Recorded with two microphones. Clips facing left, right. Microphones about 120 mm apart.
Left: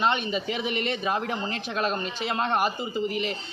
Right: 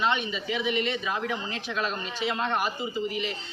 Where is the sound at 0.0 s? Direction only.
55° left (ahead or behind).